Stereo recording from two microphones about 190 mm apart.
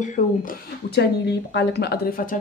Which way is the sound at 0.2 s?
40° left (ahead or behind).